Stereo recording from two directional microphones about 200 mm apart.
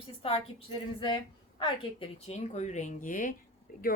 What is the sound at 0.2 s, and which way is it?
A woman's voice, 30° left (ahead or behind).